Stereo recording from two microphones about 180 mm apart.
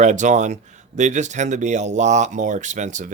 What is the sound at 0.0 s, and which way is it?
Speech, 40° right (ahead or behind).